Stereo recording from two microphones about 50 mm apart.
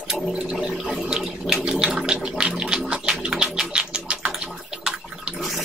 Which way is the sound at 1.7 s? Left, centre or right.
Centre.